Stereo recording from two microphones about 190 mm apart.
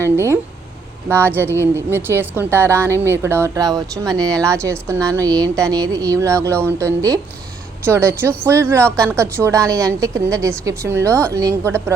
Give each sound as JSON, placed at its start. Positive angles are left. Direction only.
{"t": 0.0, "sound": "speech", "side_deg": -15}
{"t": 1.5, "sound": "speech", "side_deg": -10}